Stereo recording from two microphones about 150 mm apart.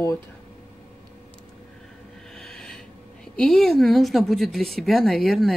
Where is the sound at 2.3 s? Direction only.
5° left (ahead or behind).